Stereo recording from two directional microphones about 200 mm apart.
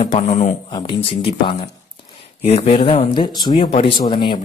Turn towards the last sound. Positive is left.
turn(degrees=25)  # may be behind; listen again after turning